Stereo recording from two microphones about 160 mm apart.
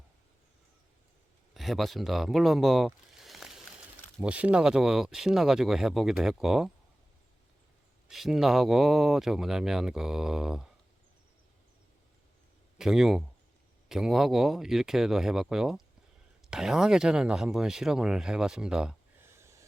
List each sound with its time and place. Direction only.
1.5 s speech: centre (ahead or behind)
8.0 s speech: 5° right (ahead or behind)
12.8 s speech: 5° right (ahead or behind)
19.3 s a sound: 15° right (ahead or behind)